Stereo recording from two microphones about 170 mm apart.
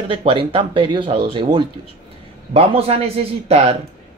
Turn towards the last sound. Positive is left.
turn(degrees=-35)  # may be behind; listen again after turning